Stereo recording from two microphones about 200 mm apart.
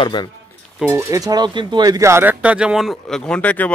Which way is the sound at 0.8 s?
15° right (ahead or behind).